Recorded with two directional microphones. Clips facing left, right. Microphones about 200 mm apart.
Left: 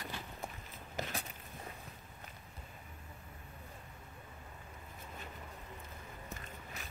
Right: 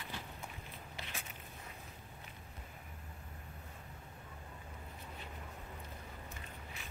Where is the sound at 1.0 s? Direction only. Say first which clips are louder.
Left 10 dB; 40° left (ahead or behind).